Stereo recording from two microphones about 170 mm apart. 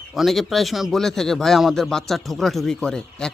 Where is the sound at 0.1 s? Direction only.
Centre (ahead or behind).